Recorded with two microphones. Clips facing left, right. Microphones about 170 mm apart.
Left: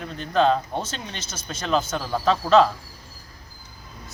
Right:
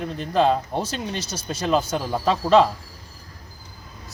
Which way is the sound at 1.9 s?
10° right (ahead or behind).